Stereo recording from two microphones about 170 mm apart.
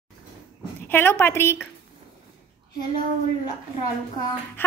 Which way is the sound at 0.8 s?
15° left (ahead or behind).